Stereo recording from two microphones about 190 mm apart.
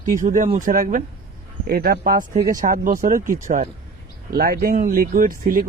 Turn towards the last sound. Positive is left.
turn(degrees=-45)  # may be behind; listen again after turning